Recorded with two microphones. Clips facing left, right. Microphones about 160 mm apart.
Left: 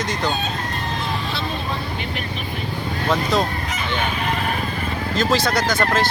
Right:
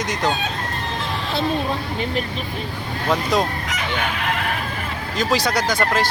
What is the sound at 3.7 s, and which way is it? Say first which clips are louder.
Chicken: left 1 dB; 75° right (ahead or behind).